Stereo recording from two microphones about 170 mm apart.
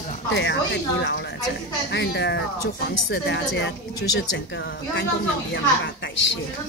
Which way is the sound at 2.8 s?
75° left (ahead or behind).